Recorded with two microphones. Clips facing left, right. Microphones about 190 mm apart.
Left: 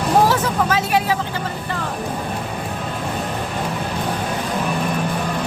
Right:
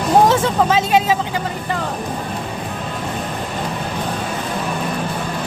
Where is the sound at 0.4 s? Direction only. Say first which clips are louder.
Right 3 dB; 25° right (ahead or behind).